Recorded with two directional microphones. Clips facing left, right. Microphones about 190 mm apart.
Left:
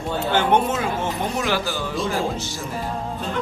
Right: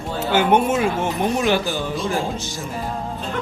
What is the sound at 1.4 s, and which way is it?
Speech, 20° right (ahead or behind).